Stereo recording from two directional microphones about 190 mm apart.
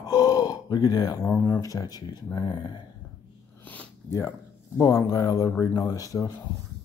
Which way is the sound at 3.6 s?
10° left (ahead or behind).